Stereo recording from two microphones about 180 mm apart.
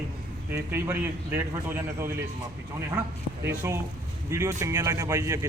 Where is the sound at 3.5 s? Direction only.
15° right (ahead or behind).